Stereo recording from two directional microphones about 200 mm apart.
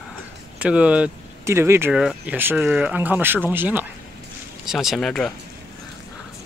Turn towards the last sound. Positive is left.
turn(degrees=5)  # may be behind; listen again after turning